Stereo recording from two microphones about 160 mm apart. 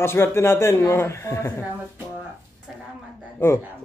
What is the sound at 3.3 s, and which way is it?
Speech, 15° left (ahead or behind).